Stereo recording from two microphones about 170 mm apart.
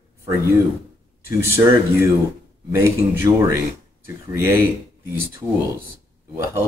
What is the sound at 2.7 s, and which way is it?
Speech, 15° right (ahead or behind).